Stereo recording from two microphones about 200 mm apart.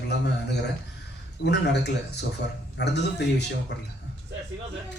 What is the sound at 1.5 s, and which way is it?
A man's voice, 55° left (ahead or behind).